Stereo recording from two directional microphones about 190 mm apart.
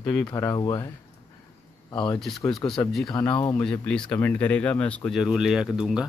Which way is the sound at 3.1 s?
20° left (ahead or behind).